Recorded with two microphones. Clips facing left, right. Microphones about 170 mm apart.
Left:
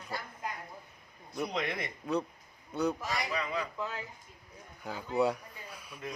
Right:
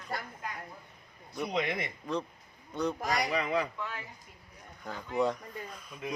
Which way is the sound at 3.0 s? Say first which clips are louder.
Right 4 dB; 60° right (ahead or behind).